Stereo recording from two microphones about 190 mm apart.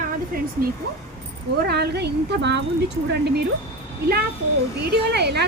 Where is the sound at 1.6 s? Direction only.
60° right (ahead or behind).